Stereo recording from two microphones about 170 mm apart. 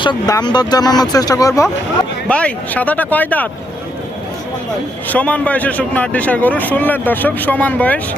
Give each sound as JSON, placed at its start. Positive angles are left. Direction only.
{"t": 0.0, "sound": "speech", "side_deg": 25}
{"t": 2.2, "sound": "a man's voice", "side_deg": 5}
{"t": 5.0, "sound": "a man's voice", "side_deg": 10}